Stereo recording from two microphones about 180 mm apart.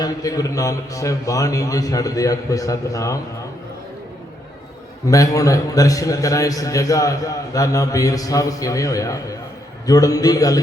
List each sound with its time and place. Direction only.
0.0 s a man's voice: 20° left (ahead or behind)
5.0 s a man's voice: 20° left (ahead or behind)